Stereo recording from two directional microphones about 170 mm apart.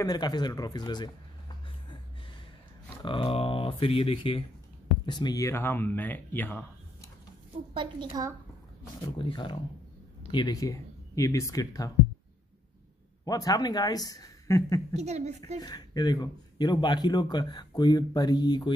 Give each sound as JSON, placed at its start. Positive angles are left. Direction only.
{"t": 0.0, "sound": "speech", "side_deg": 25}
{"t": 3.0, "sound": "speech", "side_deg": 30}
{"t": 7.7, "sound": "a woman's voice", "side_deg": -30}
{"t": 9.0, "sound": "speech", "side_deg": 25}
{"t": 13.2, "sound": "speech", "side_deg": 20}
{"t": 15.0, "sound": "speech", "side_deg": -40}
{"t": 15.6, "sound": "speech", "side_deg": 25}